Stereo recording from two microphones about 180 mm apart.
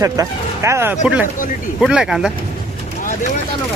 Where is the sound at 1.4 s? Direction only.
50° left (ahead or behind).